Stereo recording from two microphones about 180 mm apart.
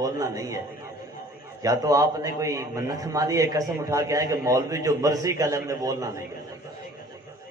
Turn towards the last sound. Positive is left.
turn(degrees=-20)  # may be behind; listen again after turning